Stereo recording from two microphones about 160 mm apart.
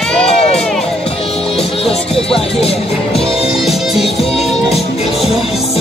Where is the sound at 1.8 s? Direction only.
Centre (ahead or behind).